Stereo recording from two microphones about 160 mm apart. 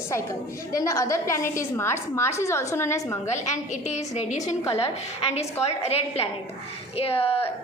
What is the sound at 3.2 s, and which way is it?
A woman's voice, 50° left (ahead or behind).